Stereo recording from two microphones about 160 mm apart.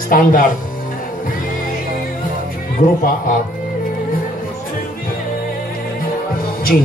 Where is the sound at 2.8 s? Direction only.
60° left (ahead or behind).